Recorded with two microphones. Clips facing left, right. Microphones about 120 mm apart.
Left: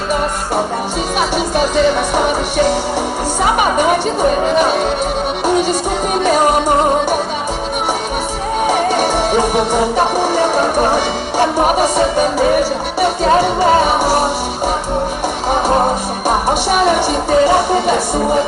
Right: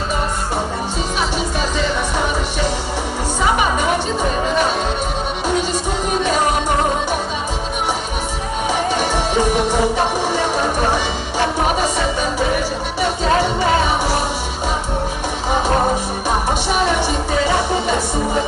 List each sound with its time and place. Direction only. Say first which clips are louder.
8.6 s music: left 4 dB; 50° left (ahead or behind)
16.3 s music: left 5 dB; 55° left (ahead or behind)